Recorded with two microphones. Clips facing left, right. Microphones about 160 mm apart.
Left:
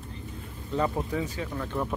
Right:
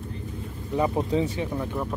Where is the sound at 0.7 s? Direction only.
20° right (ahead or behind).